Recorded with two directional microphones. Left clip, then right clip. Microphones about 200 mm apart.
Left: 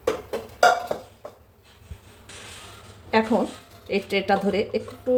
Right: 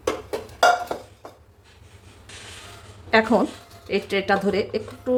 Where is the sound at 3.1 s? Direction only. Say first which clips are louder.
Right 3 dB; 20° right (ahead or behind).